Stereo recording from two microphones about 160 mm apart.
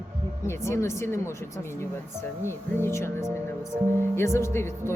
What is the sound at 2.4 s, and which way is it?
Speech, 15° left (ahead or behind).